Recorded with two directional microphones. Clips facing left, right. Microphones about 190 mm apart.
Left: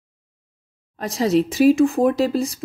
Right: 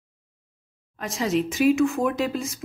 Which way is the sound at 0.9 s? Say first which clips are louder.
Left 6 dB; 35° left (ahead or behind).